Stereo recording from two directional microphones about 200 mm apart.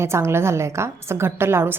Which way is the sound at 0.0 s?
15° right (ahead or behind).